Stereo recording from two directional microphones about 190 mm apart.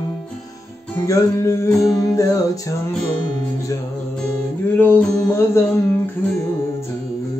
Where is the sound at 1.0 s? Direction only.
15° left (ahead or behind).